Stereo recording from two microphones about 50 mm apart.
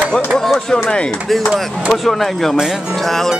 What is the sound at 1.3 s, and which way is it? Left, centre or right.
Chop, centre.